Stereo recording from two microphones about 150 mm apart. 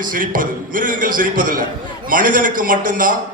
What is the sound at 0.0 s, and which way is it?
A man's voice, 65° right (ahead or behind).